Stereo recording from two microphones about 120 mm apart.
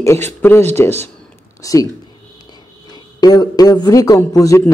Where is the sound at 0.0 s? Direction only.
20° left (ahead or behind).